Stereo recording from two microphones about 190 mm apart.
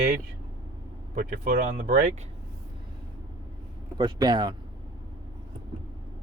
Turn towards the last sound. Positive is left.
turn(degrees=-20)  # may be behind; listen again after turning